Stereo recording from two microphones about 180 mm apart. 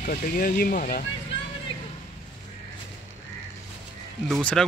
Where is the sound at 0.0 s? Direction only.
50° left (ahead or behind).